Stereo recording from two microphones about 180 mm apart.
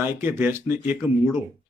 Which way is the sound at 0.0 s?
10° right (ahead or behind).